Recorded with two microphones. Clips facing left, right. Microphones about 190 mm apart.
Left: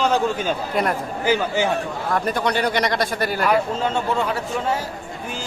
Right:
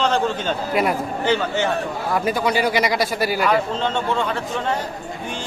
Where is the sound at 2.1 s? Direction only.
5° right (ahead or behind).